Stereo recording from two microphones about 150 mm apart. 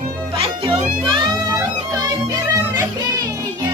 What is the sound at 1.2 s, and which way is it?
Music, 20° right (ahead or behind).